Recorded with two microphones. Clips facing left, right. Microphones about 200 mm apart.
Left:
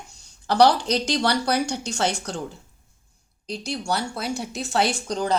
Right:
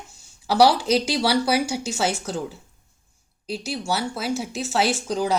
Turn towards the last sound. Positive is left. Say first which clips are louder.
# right 1 dB
turn(degrees=-5)  # may be behind; listen again after turning